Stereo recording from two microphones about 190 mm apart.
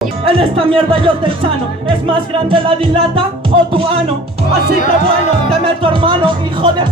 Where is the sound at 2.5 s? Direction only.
30° right (ahead or behind).